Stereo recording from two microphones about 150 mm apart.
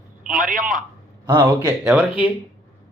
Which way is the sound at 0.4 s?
60° right (ahead or behind).